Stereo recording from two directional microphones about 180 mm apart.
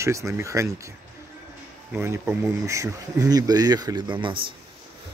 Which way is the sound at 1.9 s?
15° right (ahead or behind).